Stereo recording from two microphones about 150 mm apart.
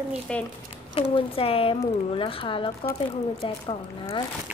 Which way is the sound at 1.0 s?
40° left (ahead or behind).